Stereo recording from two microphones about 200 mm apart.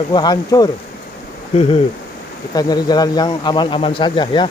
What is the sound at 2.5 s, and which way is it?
Speech, 20° left (ahead or behind).